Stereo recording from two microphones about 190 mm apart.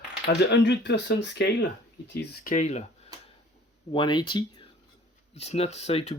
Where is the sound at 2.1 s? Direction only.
50° left (ahead or behind).